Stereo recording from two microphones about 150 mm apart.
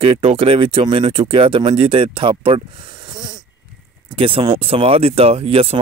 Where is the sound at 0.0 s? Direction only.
40° right (ahead or behind).